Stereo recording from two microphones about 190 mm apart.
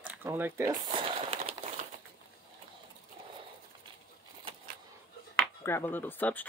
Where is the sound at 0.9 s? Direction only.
30° right (ahead or behind).